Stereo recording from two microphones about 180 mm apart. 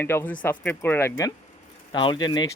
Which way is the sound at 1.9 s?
25° left (ahead or behind).